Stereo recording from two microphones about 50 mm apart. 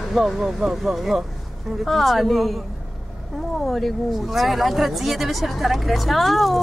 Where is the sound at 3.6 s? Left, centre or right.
Centre.